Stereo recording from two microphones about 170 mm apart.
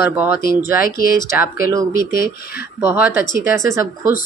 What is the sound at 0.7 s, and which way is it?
Speech, 60° left (ahead or behind).